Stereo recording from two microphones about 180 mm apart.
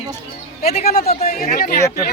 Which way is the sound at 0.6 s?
35° left (ahead or behind).